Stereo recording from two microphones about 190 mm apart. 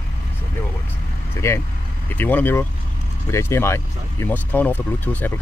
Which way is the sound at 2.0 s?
10° left (ahead or behind).